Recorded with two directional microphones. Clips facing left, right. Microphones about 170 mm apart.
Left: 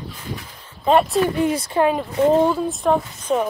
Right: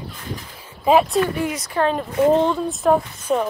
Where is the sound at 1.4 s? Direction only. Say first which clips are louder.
Left 4 dB; 30° left (ahead or behind).